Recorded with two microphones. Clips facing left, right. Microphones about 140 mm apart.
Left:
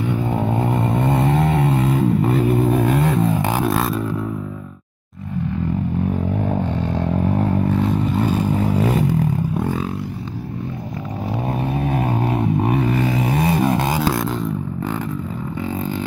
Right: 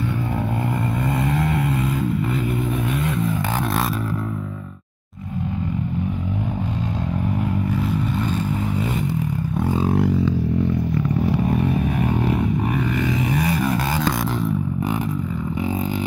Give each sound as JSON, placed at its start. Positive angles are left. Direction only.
{"t": 1.0, "sound": "vehicle", "side_deg": 25}
{"t": 12.7, "sound": "vehicle", "side_deg": 35}